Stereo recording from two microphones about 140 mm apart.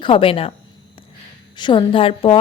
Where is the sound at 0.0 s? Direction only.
40° left (ahead or behind).